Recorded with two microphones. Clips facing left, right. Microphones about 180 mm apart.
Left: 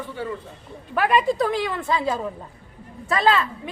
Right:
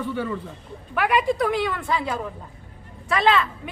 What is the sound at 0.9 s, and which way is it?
Speech, 25° left (ahead or behind).